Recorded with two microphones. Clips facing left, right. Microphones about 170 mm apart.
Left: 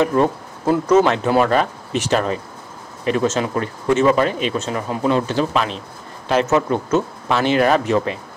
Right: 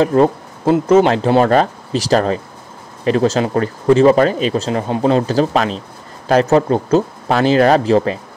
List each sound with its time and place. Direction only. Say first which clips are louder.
0.0 s speech: right 4 dB; 30° right (ahead or behind)